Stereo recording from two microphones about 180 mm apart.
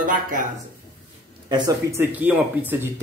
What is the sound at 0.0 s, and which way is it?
Speech, 50° right (ahead or behind).